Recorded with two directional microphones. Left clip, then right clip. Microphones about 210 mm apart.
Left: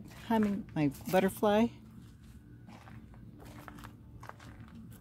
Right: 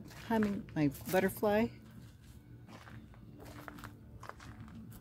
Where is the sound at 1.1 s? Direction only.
25° left (ahead or behind).